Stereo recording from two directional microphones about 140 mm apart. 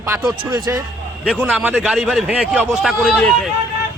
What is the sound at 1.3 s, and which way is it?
Speech, 10° right (ahead or behind).